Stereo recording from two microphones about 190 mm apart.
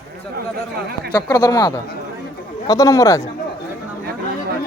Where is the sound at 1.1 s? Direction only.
20° left (ahead or behind).